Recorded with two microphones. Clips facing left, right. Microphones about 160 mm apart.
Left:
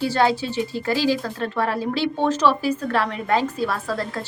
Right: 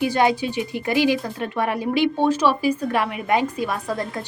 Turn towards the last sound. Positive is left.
turn(degrees=-15)  # may be behind; listen again after turning